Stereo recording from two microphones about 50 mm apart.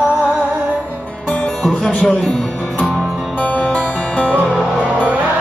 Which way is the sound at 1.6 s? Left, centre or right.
Centre.